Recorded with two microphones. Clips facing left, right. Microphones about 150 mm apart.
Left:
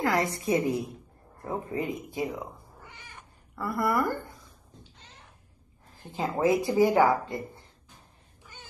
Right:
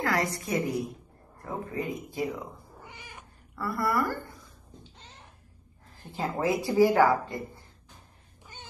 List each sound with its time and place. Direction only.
0.0 s speech: 20° left (ahead or behind)
3.0 s cat: 10° right (ahead or behind)
3.5 s speech: 20° left (ahead or behind)
6.1 s speech: 20° left (ahead or behind)